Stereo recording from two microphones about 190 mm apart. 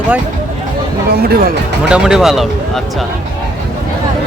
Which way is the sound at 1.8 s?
5° right (ahead or behind).